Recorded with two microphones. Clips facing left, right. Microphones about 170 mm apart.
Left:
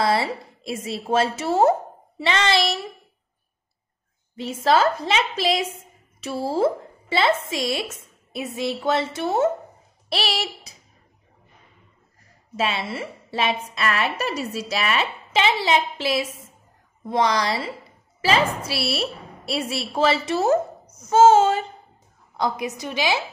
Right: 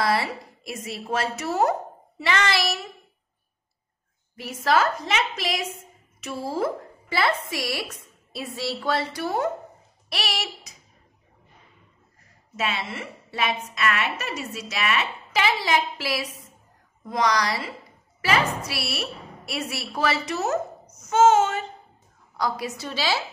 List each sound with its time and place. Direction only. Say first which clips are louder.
0.0 s a woman's voice: left 3 dB; 25° left (ahead or behind)
4.4 s a woman's voice: left 3 dB; 25° left (ahead or behind)
12.5 s a woman's voice: left 4 dB; 30° left (ahead or behind)
22.4 s a woman's voice: left 2 dB; 20° left (ahead or behind)